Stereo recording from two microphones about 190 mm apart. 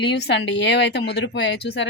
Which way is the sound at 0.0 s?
60° left (ahead or behind).